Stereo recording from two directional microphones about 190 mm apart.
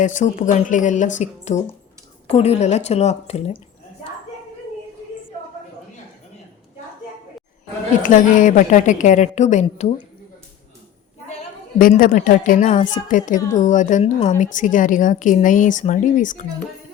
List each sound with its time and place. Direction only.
0.0 s a woman's voice: 40° left (ahead or behind)
8.0 s a woman's voice: 45° left (ahead or behind)
11.3 s a woman's voice: 40° left (ahead or behind)